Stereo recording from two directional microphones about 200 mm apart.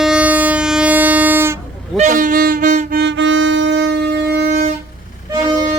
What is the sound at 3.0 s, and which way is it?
Music, 60° right (ahead or behind).